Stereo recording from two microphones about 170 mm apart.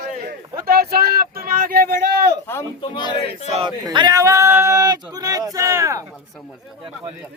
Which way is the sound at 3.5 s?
30° right (ahead or behind).